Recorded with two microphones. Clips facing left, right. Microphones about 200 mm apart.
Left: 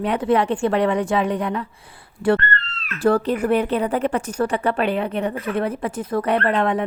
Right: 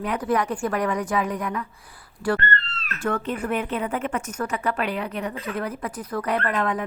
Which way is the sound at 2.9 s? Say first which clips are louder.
Left 8 dB; 35° left (ahead or behind).